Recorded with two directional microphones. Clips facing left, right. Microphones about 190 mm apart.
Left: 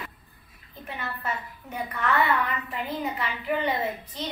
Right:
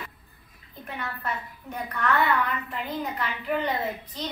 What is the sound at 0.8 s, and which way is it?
A woman's voice, 5° left (ahead or behind).